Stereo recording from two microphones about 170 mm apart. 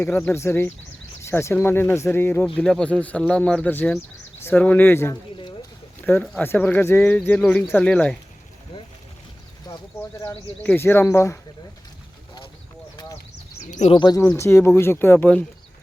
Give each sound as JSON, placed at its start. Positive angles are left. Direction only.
{"t": 0.0, "sound": "speech", "side_deg": 10}
{"t": 9.6, "sound": "speech", "side_deg": 15}
{"t": 13.7, "sound": "bird", "side_deg": 45}
{"t": 13.9, "sound": "speech", "side_deg": 25}
{"t": 14.2, "sound": "speech", "side_deg": 15}